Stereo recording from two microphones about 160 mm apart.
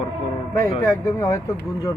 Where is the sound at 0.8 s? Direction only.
20° left (ahead or behind).